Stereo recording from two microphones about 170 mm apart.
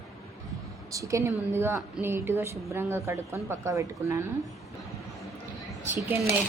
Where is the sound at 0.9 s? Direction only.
20° right (ahead or behind).